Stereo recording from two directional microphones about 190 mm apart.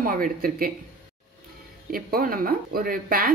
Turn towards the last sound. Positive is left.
turn(degrees=-50)  # may be behind; listen again after turning